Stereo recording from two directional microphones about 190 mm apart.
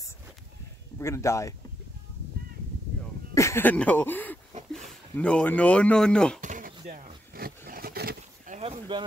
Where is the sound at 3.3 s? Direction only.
15° left (ahead or behind).